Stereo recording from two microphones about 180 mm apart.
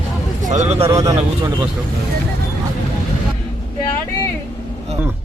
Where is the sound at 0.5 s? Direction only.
40° right (ahead or behind).